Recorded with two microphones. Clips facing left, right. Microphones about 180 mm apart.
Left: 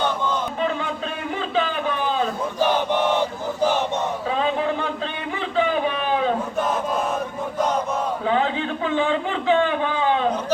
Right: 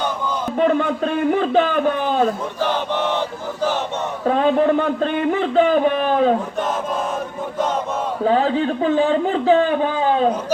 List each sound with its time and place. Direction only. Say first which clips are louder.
0.6 s a man's voice: right 7 dB; 50° right (ahead or behind)
2.6 s chant: left 4 dB; 15° left (ahead or behind)
4.3 s speech: right 9 dB; 50° right (ahead or behind)
8.2 s a man's voice: right 8 dB; 35° right (ahead or behind)